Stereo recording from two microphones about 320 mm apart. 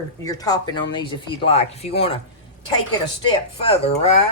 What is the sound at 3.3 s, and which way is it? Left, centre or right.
Speech, centre.